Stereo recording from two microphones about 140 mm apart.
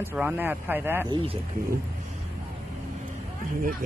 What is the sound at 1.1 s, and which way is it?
Speech, 40° right (ahead or behind).